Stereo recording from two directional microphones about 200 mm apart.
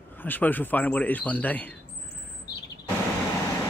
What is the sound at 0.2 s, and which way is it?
Speech, 10° left (ahead or behind).